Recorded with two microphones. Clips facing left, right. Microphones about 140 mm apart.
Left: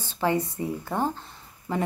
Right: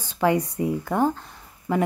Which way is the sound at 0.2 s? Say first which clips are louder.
Right 4 dB; 15° right (ahead or behind).